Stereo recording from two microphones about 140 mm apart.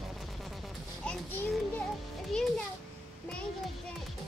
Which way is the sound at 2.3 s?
5° left (ahead or behind).